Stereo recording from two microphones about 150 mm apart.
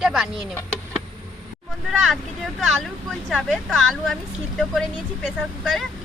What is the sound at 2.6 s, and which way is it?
Speech, centre (ahead or behind).